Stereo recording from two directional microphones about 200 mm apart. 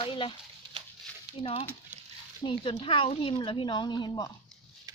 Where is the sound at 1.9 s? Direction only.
10° right (ahead or behind).